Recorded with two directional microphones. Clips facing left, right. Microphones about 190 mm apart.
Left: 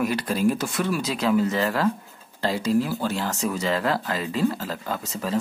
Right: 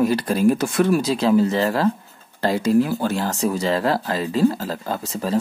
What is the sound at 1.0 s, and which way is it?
Speech, 30° right (ahead or behind).